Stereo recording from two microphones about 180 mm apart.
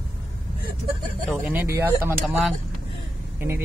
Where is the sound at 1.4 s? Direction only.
10° right (ahead or behind).